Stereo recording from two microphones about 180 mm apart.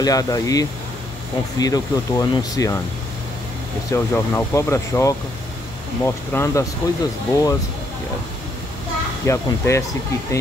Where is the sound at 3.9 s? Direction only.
15° left (ahead or behind).